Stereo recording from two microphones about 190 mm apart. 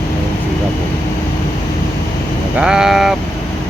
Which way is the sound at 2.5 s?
5° right (ahead or behind).